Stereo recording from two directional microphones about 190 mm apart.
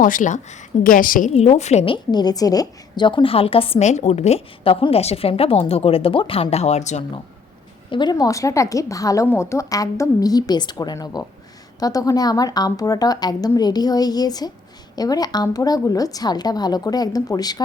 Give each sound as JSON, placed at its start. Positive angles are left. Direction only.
{"t": 0.0, "sound": "a woman's voice", "side_deg": 45}
{"t": 1.3, "sound": "a woman's voice", "side_deg": 35}
{"t": 7.9, "sound": "a woman's voice", "side_deg": 25}